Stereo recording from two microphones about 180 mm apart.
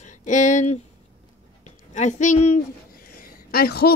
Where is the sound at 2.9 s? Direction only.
55° left (ahead or behind).